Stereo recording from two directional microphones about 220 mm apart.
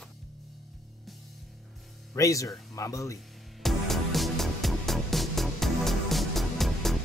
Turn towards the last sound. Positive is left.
turn(degrees=0)  # may be behind; listen again after turning